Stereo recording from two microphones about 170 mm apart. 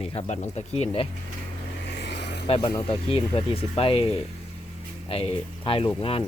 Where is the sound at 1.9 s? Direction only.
85° left.